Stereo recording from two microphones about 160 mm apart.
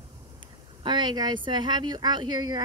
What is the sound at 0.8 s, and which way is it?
Speech, 25° right (ahead or behind).